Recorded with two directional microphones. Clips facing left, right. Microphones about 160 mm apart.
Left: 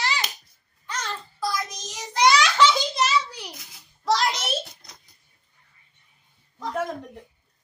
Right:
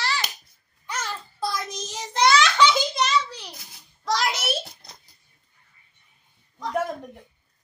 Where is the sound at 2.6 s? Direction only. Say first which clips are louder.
Even; centre (ahead or behind).